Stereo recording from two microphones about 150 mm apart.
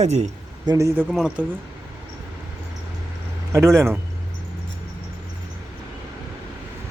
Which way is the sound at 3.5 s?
20° right (ahead or behind).